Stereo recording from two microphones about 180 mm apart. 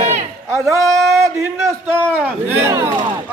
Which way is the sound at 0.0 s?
45° right (ahead or behind).